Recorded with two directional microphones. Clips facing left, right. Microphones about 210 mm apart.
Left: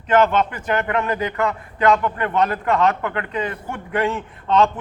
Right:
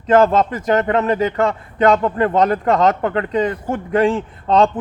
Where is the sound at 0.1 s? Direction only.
30° right (ahead or behind).